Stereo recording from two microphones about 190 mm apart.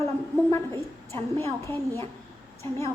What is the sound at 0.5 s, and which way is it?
A woman's voice, 15° left (ahead or behind).